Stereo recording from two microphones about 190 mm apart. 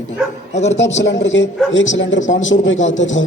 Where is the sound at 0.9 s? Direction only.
70° left (ahead or behind).